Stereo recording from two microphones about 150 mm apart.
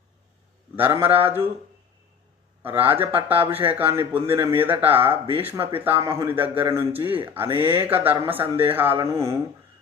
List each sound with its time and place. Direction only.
0.8 s speech: 15° right (ahead or behind)
2.6 s speech: 15° right (ahead or behind)